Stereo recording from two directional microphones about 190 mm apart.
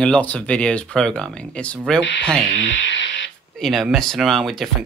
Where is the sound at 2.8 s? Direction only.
75° left (ahead or behind).